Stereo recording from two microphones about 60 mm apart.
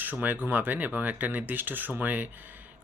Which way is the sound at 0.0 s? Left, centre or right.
Right.